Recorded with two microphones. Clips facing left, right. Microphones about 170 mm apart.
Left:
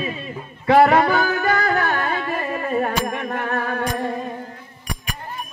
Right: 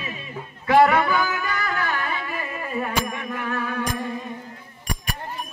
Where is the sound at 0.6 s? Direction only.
35° left (ahead or behind).